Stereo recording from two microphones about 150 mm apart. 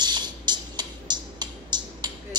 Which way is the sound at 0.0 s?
30° right (ahead or behind).